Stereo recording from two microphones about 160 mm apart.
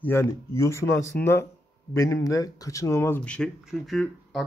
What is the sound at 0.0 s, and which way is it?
Speech, 15° left (ahead or behind).